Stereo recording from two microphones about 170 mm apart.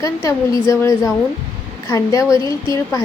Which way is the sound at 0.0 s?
20° left (ahead or behind).